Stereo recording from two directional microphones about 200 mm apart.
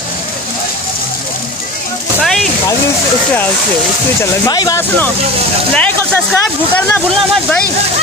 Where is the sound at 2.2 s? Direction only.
Centre (ahead or behind).